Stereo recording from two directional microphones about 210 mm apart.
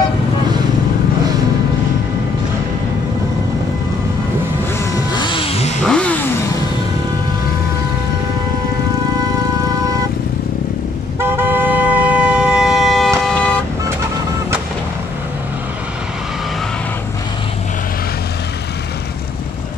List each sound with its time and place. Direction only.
5.1 s music: 20° left (ahead or behind)
5.9 s music: 5° left (ahead or behind)
11.1 s vehicle: 10° right (ahead or behind); by 13.6 s 5° left (ahead or behind)